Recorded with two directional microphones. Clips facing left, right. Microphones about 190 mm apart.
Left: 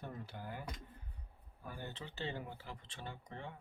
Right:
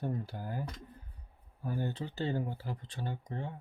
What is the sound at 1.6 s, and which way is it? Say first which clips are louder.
Speech: right 11 dB; 35° right (ahead or behind).